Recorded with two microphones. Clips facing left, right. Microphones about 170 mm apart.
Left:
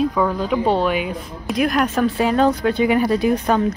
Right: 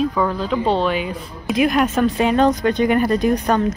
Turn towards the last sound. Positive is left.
turn(degrees=5)  # may be behind; listen again after turning